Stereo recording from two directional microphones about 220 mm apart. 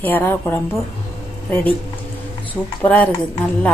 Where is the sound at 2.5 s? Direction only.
5° left (ahead or behind).